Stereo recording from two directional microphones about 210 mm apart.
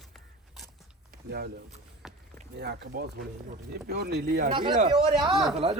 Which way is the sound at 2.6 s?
50° right (ahead or behind).